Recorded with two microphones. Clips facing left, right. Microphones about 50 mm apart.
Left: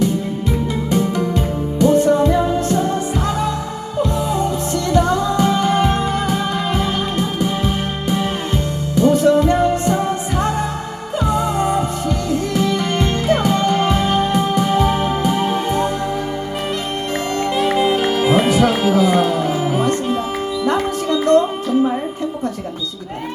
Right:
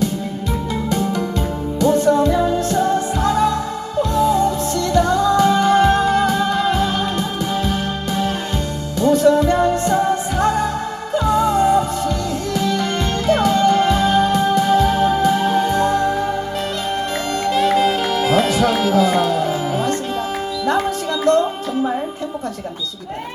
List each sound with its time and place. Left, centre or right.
0.9 s music: left
17.6 s music: centre